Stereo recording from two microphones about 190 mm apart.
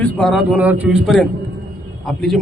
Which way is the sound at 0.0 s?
Centre (ahead or behind).